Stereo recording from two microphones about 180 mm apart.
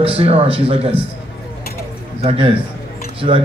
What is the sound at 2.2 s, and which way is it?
Speech, 30° right (ahead or behind).